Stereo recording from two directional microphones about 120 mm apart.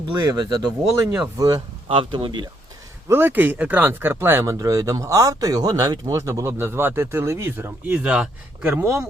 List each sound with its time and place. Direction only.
0.2 s speech: 35° right (ahead or behind)
1.9 s speech: 45° right (ahead or behind)
3.1 s speech: 20° right (ahead or behind)
4.5 s speech: 30° right (ahead or behind)
7.9 s speech: 10° right (ahead or behind)
8.8 s speech: 25° right (ahead or behind)